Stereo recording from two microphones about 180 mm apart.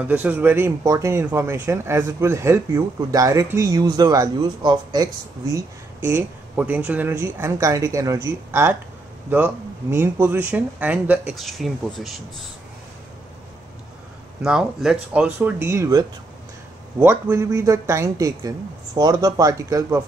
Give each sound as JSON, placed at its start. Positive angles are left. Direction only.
{"t": 0.0, "sound": "speech", "side_deg": -10}
{"t": 14.4, "sound": "speech", "side_deg": -5}